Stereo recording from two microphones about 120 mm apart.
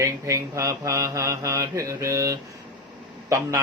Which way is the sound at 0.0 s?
25° right (ahead or behind).